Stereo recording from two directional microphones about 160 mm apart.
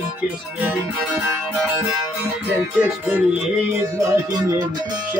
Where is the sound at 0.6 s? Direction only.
10° right (ahead or behind).